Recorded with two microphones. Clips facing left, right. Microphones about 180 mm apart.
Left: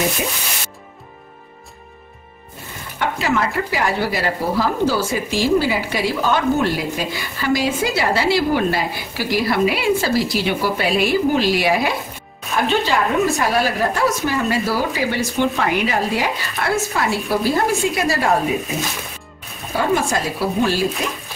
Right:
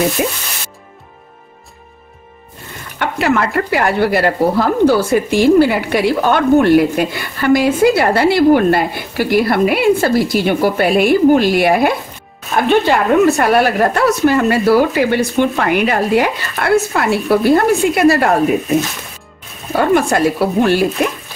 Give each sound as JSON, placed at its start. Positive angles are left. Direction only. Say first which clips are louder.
{"t": 3.0, "sound": "speech", "louder": "right 4 dB", "side_deg": -60}
{"t": 19.8, "sound": "speech", "louder": "right 7 dB", "side_deg": -60}